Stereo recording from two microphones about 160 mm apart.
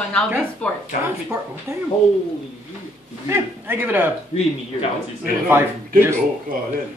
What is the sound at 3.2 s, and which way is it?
Speech, 15° right (ahead or behind).